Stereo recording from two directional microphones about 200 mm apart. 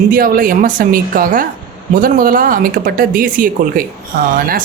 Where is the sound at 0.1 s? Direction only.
45° right (ahead or behind).